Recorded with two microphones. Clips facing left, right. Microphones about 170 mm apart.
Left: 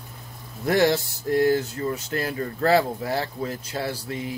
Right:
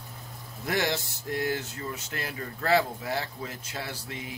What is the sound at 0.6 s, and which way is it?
Speech, 35° left (ahead or behind).